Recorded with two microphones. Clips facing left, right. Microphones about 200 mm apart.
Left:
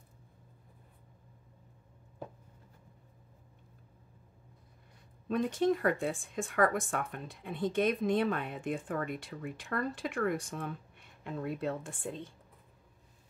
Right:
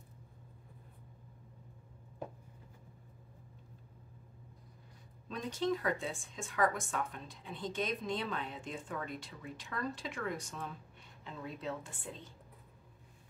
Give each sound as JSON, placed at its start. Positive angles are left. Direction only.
{"t": 5.3, "sound": "speech", "side_deg": 55}